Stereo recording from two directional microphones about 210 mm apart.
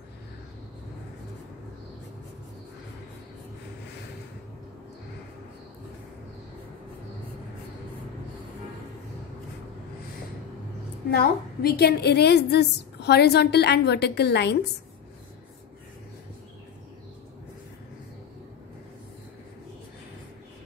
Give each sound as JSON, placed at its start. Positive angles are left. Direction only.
{"t": 11.1, "sound": "a woman's voice", "side_deg": 50}